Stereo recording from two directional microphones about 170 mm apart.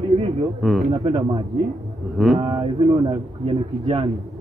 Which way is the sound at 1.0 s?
35° right (ahead or behind).